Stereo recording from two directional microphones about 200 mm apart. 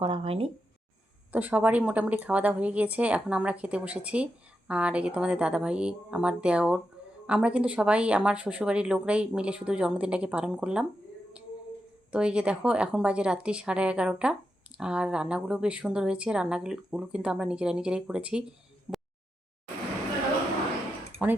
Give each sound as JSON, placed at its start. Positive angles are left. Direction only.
{"t": 0.0, "sound": "speech", "side_deg": -25}
{"t": 1.3, "sound": "a woman's voice", "side_deg": -5}
{"t": 12.1, "sound": "a woman's voice", "side_deg": -5}
{"t": 21.2, "sound": "a woman's voice", "side_deg": -5}